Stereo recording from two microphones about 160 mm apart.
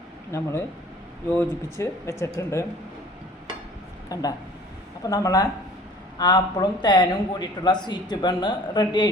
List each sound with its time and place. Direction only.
0.3 s speech: 20° left (ahead or behind)
1.8 s speech: 15° left (ahead or behind)
4.1 s a man's voice: 25° left (ahead or behind)